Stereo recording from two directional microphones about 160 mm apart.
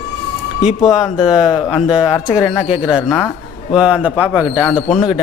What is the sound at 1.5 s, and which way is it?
Speech, 25° left (ahead or behind).